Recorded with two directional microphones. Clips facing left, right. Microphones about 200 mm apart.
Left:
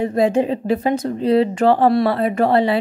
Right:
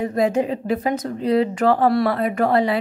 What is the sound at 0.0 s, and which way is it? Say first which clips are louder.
Speech: left 3 dB; 30° left (ahead or behind).